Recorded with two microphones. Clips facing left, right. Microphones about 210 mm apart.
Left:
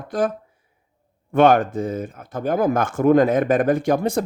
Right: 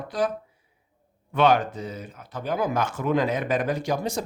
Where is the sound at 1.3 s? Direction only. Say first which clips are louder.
Left 6 dB; 50° left (ahead or behind).